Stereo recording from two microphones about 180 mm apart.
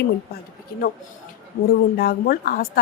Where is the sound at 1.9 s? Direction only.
55° left (ahead or behind).